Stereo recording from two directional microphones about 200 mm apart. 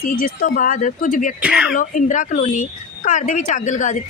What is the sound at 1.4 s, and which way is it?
Speech, 5° right (ahead or behind).